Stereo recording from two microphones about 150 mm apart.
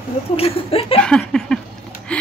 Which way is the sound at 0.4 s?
40° left (ahead or behind).